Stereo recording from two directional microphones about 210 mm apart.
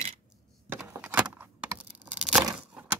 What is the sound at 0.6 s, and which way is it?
Keys jangling, 10° right (ahead or behind).